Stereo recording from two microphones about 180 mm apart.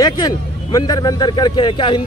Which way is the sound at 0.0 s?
20° left (ahead or behind).